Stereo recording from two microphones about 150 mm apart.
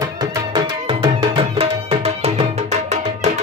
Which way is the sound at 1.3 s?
40° right (ahead or behind).